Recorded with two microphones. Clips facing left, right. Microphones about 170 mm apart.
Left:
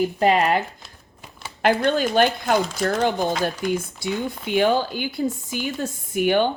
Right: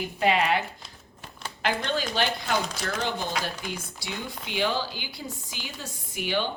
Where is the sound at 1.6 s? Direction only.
55° left (ahead or behind).